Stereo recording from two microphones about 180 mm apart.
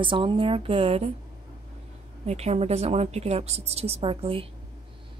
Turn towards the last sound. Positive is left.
turn(degrees=-30)  # may be behind; listen again after turning